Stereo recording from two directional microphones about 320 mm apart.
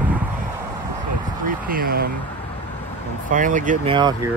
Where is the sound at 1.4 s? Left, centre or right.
Right.